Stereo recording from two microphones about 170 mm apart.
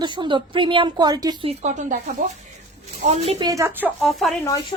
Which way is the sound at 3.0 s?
40° right (ahead or behind).